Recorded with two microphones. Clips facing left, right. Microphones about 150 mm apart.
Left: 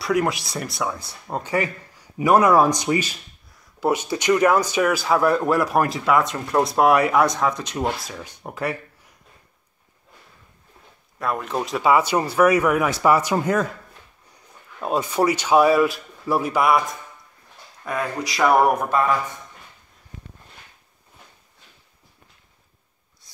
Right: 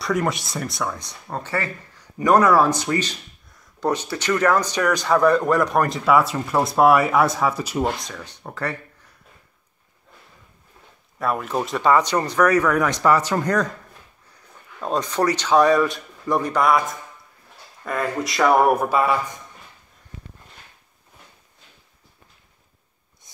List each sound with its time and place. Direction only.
0.0 s speech: centre (ahead or behind)
1.2 s speech: 15° left (ahead or behind); by 8.1 s 5° right (ahead or behind)
8.1 s speech: 10° left (ahead or behind)
11.1 s speech: centre (ahead or behind)
18.9 s a man's voice: 10° right (ahead or behind)
23.3 s rub: 20° right (ahead or behind)